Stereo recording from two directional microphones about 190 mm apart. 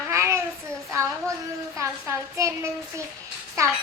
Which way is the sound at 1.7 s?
15° right (ahead or behind).